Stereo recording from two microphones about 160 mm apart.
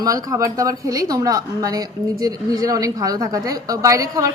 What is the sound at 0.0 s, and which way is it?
Speech, 25° right (ahead or behind).